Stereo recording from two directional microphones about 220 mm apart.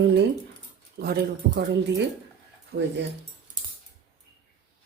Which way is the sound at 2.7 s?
55° right (ahead or behind).